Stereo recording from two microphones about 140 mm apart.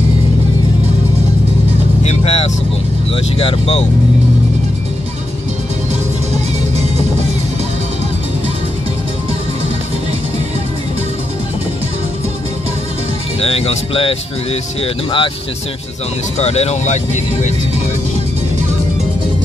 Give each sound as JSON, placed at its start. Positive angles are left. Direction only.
{"t": 2.0, "sound": "vehicle", "side_deg": 50}
{"t": 3.3, "sound": "speech", "side_deg": 40}
{"t": 13.4, "sound": "speech", "side_deg": 45}
{"t": 16.3, "sound": "speech", "side_deg": 50}